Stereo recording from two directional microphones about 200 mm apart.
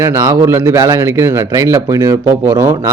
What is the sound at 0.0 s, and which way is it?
Speech, 15° right (ahead or behind).